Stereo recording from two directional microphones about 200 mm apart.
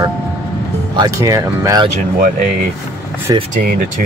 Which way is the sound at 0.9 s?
15° right (ahead or behind).